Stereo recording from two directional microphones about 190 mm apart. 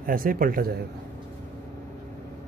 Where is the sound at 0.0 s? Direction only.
50° right (ahead or behind).